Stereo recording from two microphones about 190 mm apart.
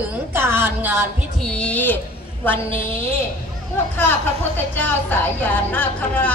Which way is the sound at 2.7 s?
30° right (ahead or behind).